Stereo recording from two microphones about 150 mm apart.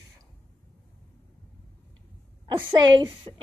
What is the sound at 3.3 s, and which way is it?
Speech, 35° right (ahead or behind).